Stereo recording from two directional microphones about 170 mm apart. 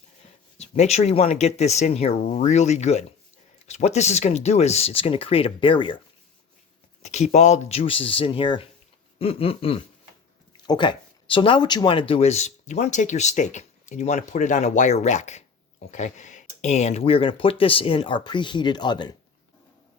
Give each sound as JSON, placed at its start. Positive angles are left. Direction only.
{"t": 0.6, "sound": "speech", "side_deg": 40}
{"t": 7.0, "sound": "speech", "side_deg": 40}